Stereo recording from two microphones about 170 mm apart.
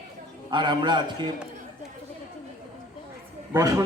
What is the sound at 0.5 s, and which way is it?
Speech, 25° right (ahead or behind).